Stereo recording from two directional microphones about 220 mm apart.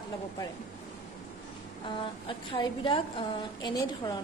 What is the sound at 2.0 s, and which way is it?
A woman's voice, 20° left (ahead or behind).